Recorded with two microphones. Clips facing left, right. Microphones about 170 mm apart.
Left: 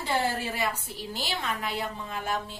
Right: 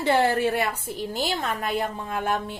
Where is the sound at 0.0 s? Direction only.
65° right (ahead or behind).